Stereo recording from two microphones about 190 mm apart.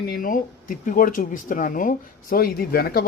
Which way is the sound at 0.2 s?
45° left (ahead or behind).